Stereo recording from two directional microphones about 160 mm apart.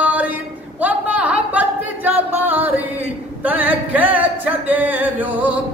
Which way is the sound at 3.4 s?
10° right (ahead or behind).